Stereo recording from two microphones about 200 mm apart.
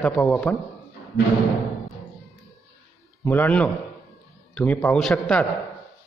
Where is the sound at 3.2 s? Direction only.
10° left (ahead or behind).